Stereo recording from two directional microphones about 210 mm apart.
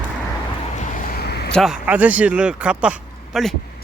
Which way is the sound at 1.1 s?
50° left (ahead or behind).